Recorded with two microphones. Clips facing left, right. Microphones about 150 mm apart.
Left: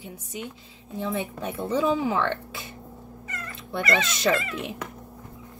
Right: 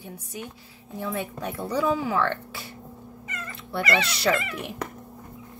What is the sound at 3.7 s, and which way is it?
Speech, 20° left (ahead or behind).